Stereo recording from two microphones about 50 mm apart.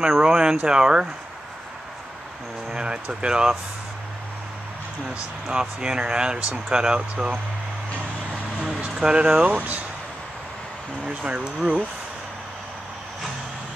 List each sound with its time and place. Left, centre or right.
0.0 s speech: centre
2.7 s speech: centre
5.5 s speech: centre
8.8 s speech: right
9.5 s speech: right
11.1 s speech: right